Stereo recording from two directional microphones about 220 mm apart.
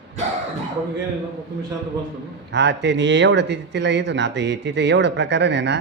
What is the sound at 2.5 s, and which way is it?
Speech, 50° right (ahead or behind).